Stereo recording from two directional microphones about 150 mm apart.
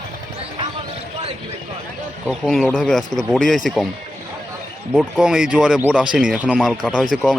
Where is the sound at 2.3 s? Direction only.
Centre (ahead or behind).